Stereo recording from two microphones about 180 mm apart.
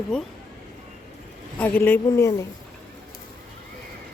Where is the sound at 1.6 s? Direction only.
15° left (ahead or behind).